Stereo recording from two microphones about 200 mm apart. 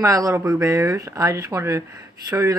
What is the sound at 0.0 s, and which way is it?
Speech, 15° right (ahead or behind).